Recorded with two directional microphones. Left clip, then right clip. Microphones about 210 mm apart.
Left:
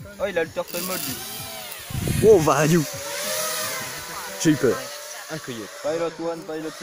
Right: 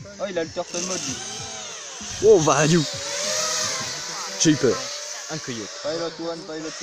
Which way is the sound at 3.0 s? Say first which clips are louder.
Right 2 dB; 5° right (ahead or behind).